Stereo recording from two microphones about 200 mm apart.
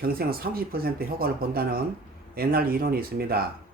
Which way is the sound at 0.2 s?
50° right (ahead or behind).